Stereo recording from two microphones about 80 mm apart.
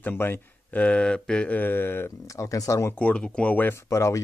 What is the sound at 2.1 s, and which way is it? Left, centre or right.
Speech, left.